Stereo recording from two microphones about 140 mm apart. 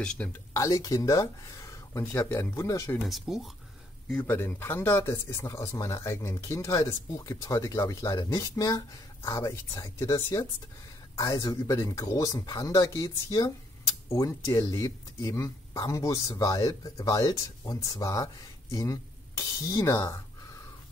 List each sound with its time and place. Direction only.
0.0 s speech: 10° left (ahead or behind)
0.5 s speech: 20° left (ahead or behind)
3.1 s speech: centre (ahead or behind)
4.1 s speech: 10° left (ahead or behind)
11.1 s speech: 25° left (ahead or behind)